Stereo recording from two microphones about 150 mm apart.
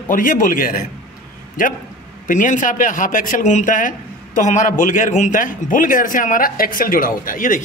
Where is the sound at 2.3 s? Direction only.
60° left (ahead or behind).